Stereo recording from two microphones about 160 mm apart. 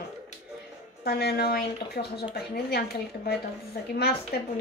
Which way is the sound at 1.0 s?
90° left.